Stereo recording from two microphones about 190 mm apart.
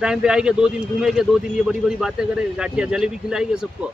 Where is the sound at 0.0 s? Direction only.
5° right (ahead or behind).